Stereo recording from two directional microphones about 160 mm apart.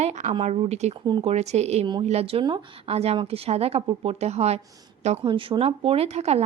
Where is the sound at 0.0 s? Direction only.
45° right (ahead or behind).